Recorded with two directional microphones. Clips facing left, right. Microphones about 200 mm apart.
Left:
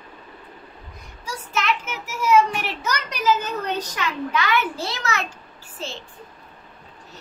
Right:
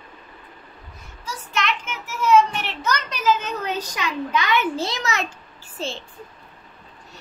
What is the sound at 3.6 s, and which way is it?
Speech, 5° right (ahead or behind).